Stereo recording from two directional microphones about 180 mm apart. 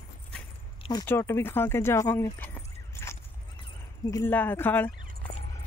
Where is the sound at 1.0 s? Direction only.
10° left (ahead or behind).